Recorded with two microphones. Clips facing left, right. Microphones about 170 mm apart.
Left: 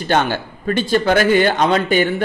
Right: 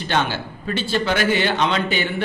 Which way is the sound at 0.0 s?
50° left (ahead or behind).